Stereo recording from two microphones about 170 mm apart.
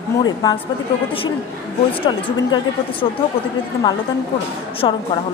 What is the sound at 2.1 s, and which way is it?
Speech, 25° left (ahead or behind).